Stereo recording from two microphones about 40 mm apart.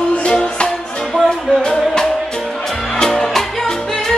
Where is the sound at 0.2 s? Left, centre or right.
Left.